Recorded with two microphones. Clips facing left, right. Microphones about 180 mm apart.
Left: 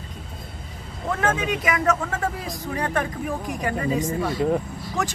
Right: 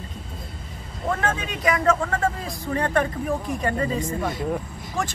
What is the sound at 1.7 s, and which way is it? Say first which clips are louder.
Speech: right 4 dB; 5° left (ahead or behind).